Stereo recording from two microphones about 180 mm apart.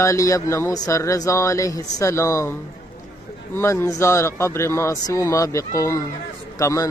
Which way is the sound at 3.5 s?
15° left (ahead or behind).